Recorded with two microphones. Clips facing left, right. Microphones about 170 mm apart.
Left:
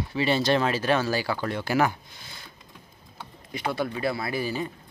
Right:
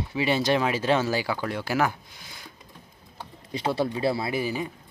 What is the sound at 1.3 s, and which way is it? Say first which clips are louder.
Speech: left 1 dB; 5° right (ahead or behind).